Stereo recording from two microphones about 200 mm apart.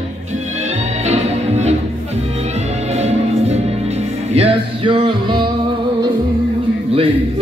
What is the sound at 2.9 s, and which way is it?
Music, 30° right (ahead or behind).